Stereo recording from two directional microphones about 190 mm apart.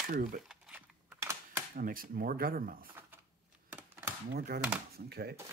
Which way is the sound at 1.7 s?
45° right (ahead or behind).